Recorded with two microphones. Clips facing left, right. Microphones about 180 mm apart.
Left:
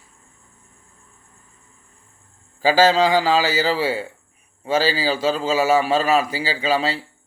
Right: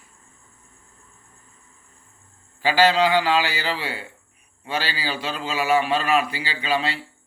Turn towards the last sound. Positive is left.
turn(degrees=40)  # may be behind; listen again after turning